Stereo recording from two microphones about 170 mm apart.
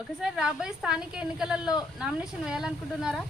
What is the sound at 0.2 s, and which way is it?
A woman's voice, 5° right (ahead or behind).